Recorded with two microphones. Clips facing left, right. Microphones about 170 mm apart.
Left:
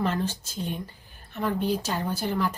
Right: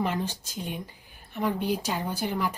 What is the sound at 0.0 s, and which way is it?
Speech, 15° right (ahead or behind).